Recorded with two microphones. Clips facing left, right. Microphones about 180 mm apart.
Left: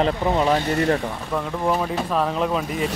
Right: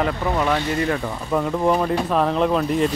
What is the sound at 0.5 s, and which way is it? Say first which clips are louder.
Speech: left 2 dB; 40° left (ahead or behind).